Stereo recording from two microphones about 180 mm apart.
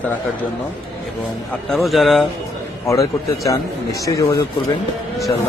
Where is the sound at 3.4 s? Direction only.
20° left (ahead or behind).